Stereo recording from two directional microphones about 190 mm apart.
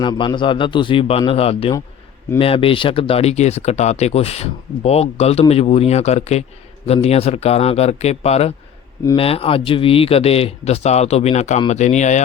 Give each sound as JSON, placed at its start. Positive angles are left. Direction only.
{"t": 0.0, "sound": "a man's voice", "side_deg": 25}